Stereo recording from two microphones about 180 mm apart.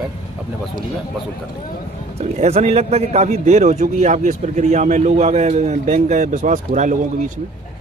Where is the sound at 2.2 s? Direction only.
35° right (ahead or behind).